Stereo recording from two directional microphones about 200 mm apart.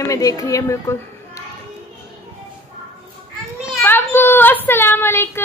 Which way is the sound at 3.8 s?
10° left (ahead or behind).